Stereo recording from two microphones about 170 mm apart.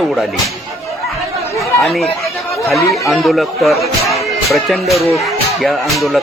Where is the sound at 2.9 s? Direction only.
Centre (ahead or behind).